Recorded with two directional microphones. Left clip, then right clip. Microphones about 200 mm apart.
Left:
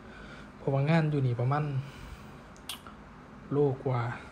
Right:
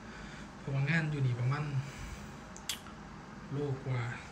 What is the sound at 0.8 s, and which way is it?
Speech, 20° left (ahead or behind).